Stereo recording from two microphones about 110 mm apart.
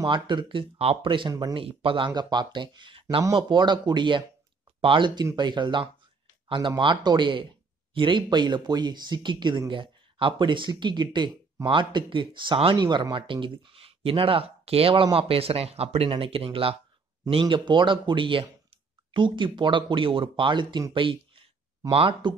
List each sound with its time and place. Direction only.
0.0 s speech: 45° right (ahead or behind)